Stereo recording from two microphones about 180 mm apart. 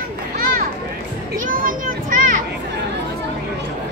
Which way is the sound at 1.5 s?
50° right (ahead or behind).